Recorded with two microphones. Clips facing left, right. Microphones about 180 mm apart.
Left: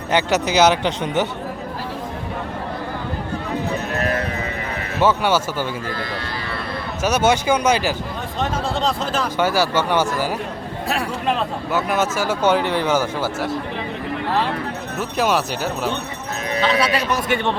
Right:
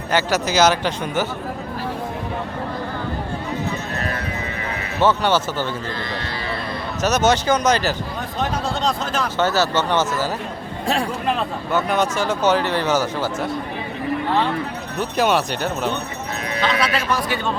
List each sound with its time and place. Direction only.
0.1 s speech: 20° left (ahead or behind)
4.9 s speech: 10° left (ahead or behind)
7.0 s speech: 10° left (ahead or behind)
8.4 s speech: centre (ahead or behind)
11.3 s speech: 5° left (ahead or behind)
14.9 s speech: centre (ahead or behind)
16.6 s speech: 35° left (ahead or behind)
16.9 s speech: 20° left (ahead or behind)